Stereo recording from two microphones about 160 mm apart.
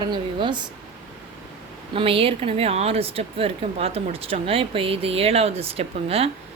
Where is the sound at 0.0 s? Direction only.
30° right (ahead or behind).